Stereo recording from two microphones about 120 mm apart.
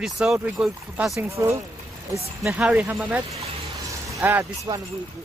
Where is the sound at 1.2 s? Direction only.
20° right (ahead or behind).